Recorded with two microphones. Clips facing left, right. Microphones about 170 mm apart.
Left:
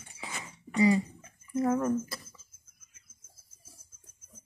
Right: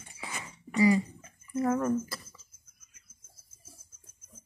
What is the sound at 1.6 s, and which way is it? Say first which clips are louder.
Speech: even; 10° left (ahead or behind).